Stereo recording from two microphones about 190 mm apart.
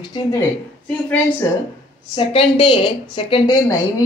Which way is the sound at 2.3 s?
30° left (ahead or behind).